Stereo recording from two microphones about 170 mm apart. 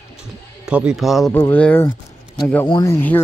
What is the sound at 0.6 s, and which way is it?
Speech, 5° right (ahead or behind).